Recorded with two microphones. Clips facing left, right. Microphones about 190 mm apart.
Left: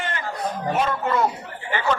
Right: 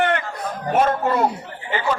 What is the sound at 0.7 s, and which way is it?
Speech, 45° right (ahead or behind).